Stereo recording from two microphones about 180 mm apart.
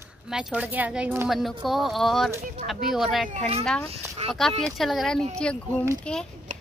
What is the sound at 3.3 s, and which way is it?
Speech, 35° right (ahead or behind).